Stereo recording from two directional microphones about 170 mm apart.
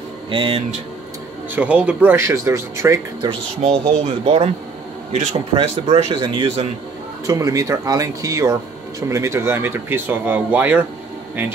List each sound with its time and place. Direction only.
0.3 s speech: 30° right (ahead or behind)
1.5 s speech: 10° right (ahead or behind)
3.3 s speech: 40° right (ahead or behind)
5.5 s speech: 35° right (ahead or behind)
7.2 s speech: 20° right (ahead or behind)